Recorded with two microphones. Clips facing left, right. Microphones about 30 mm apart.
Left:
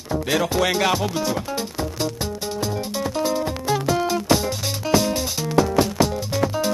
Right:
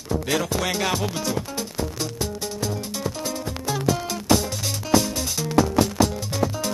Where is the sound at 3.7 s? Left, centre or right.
Centre.